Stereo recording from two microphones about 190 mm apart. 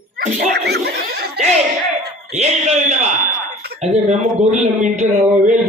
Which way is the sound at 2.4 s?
35° right (ahead or behind).